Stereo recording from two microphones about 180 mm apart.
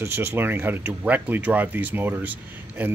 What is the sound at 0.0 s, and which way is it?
Speech, 15° right (ahead or behind).